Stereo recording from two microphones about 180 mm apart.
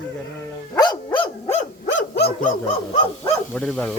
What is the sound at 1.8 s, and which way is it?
Dog, 65° left (ahead or behind).